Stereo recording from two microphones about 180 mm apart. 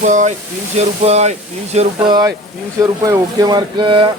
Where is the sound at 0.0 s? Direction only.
45° right (ahead or behind).